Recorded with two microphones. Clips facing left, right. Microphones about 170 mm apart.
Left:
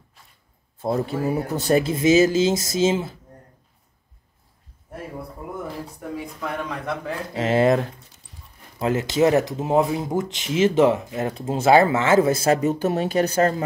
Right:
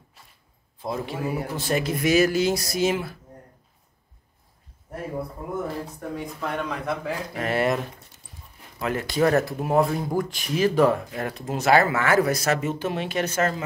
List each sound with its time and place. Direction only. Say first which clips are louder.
0.8 s speech: left 5 dB; 40° left (ahead or behind)
2.0 s speech: left 2 dB; 25° left (ahead or behind)
5.9 s speech: even; centre (ahead or behind)
7.3 s speech: left 6 dB; 25° left (ahead or behind)